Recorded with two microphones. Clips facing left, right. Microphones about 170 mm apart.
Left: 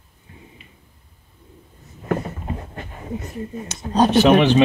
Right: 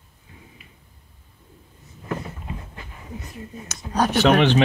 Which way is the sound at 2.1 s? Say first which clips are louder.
Left 6 dB; 50° left (ahead or behind).